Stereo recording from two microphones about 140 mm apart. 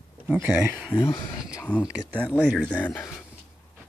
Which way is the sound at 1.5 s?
15° left (ahead or behind).